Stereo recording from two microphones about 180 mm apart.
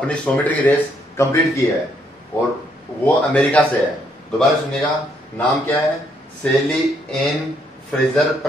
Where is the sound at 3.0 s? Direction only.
5° left (ahead or behind).